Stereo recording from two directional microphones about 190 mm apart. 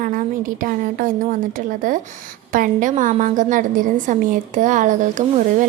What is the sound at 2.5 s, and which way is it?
A woman's voice, 45° right (ahead or behind).